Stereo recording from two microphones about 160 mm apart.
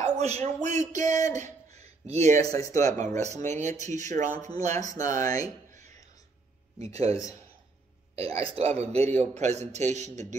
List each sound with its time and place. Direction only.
0.2 s speech: 40° right (ahead or behind)
2.3 s speech: 20° left (ahead or behind)
3.0 s a man's voice: 45° right (ahead or behind)
4.8 s speech: 20° left (ahead or behind)
5.7 s a sound: 45° right (ahead or behind)
8.2 s a man's voice: 40° right (ahead or behind)